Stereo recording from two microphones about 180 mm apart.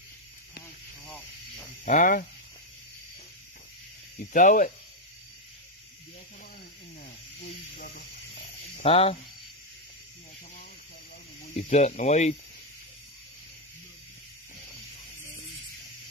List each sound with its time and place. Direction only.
1.9 s speech: 45° left (ahead or behind)
4.3 s speech: 45° left (ahead or behind)
7.3 s snake: 60° left (ahead or behind)
8.7 s speech: 35° left (ahead or behind)
11.5 s speech: 35° left (ahead or behind)